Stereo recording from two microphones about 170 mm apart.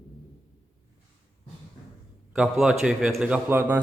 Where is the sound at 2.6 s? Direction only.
5° right (ahead or behind).